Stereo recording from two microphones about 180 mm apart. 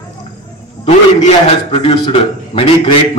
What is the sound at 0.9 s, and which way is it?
A man's voice, 35° left (ahead or behind).